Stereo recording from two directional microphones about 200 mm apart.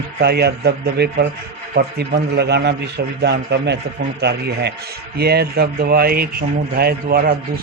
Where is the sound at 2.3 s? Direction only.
55° right (ahead or behind).